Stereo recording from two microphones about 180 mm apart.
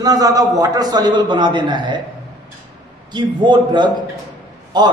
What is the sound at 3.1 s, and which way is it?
A man's voice, 25° right (ahead or behind).